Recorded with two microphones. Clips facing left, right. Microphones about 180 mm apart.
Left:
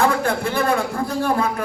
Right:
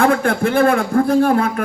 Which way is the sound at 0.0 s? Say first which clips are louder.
Right 4 dB; 50° right (ahead or behind).